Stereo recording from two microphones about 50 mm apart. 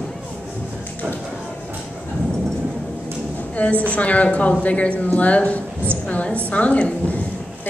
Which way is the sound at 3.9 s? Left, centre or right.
Left.